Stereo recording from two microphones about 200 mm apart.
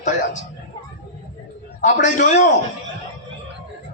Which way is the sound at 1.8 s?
40° left (ahead or behind).